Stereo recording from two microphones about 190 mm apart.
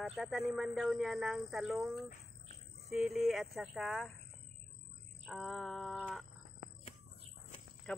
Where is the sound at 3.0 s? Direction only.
Centre (ahead or behind).